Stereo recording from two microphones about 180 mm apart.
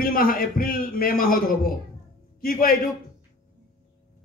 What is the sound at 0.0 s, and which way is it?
A man's voice, 50° left (ahead or behind).